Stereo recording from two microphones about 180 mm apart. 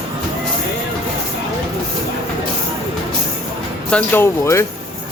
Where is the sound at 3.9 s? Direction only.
10° left (ahead or behind).